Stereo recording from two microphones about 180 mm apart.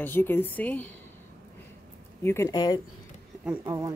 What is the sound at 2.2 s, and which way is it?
Speech, 15° left (ahead or behind).